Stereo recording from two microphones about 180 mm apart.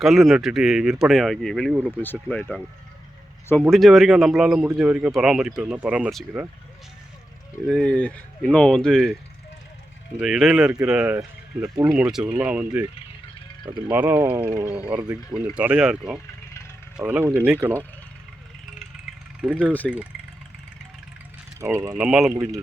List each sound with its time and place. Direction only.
0.0 s speech: centre (ahead or behind)
3.6 s speech: centre (ahead or behind)
7.7 s speech: 5° left (ahead or behind)
10.2 s speech: centre (ahead or behind)
19.4 s speech: 5° right (ahead or behind)
21.6 s speech: 15° right (ahead or behind)
21.9 s speech: 5° right (ahead or behind)